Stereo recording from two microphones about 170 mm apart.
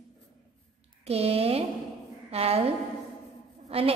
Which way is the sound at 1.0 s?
35° right (ahead or behind).